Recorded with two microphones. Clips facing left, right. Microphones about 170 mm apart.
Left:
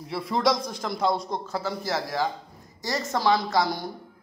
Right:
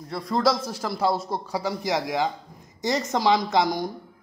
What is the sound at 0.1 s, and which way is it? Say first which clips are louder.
A man's voice: right 1 dB; centre (ahead or behind).